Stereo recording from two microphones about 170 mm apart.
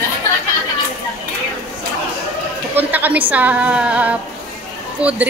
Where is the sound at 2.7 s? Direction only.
10° right (ahead or behind).